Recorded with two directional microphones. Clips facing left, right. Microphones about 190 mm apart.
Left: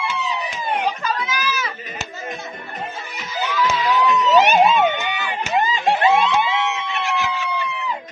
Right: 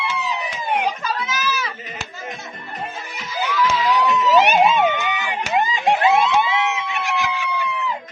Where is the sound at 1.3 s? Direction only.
Centre (ahead or behind).